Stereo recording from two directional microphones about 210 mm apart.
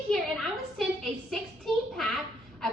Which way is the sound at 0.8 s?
Centre (ahead or behind).